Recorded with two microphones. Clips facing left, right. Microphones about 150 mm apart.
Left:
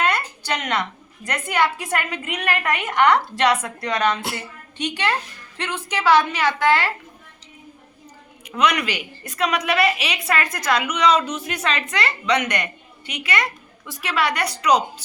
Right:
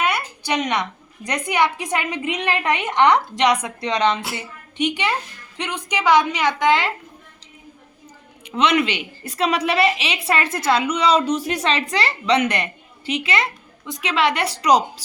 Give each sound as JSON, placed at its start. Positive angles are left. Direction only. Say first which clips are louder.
{"t": 0.0, "sound": "a woman's voice", "louder": "even", "side_deg": -10}
{"t": 8.4, "sound": "a woman's voice", "louder": "right 2 dB", "side_deg": -25}